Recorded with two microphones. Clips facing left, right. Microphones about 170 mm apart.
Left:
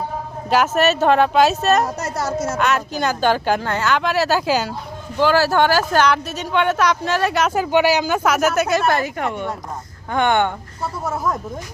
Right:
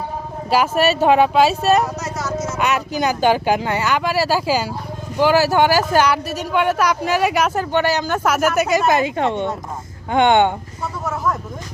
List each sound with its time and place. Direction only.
0.8 s speech: 10° right (ahead or behind)
2.0 s speech: 60° left (ahead or behind)
2.6 s speech: 15° right (ahead or behind)
7.5 s a woman's voice: 5° left (ahead or behind); by 10.5 s 20° right (ahead or behind)
11.0 s speech: 10° left (ahead or behind)